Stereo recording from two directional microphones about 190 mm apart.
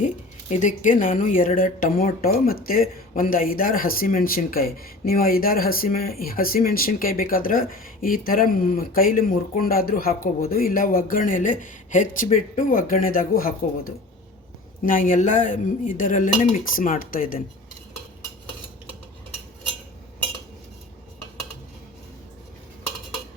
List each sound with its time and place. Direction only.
0.5 s speech: 40° left (ahead or behind)